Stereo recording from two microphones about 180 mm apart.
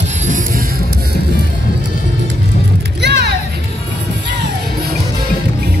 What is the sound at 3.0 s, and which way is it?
Music, 70° right (ahead or behind).